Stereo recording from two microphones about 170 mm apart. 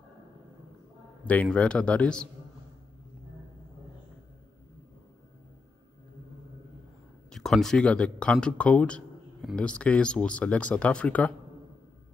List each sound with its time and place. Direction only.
1.2 s speech: 10° left (ahead or behind)
7.2 s speech: centre (ahead or behind)